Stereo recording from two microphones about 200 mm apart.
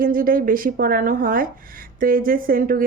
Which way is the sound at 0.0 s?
45° right (ahead or behind).